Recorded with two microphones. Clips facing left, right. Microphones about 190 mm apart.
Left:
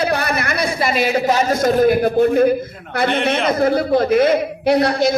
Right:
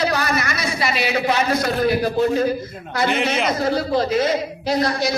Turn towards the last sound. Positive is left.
turn(degrees=60)  # may be behind; listen again after turning